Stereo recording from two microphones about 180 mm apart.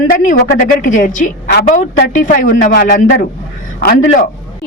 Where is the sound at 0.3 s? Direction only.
45° left (ahead or behind).